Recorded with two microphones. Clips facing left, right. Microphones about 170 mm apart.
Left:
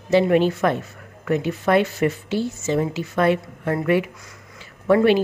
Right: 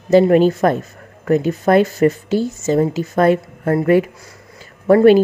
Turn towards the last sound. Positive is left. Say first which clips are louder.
# right 6 dB
turn(degrees=-45)  # may be behind; listen again after turning